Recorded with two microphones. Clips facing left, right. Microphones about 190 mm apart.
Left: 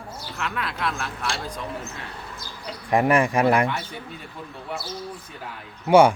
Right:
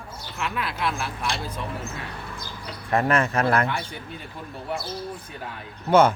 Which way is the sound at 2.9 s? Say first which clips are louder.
Left 3 dB; 15° left (ahead or behind).